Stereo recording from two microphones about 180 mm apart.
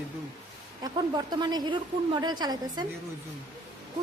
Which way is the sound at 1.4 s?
20° right (ahead or behind).